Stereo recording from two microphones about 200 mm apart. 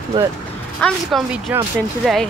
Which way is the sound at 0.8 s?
Centre (ahead or behind).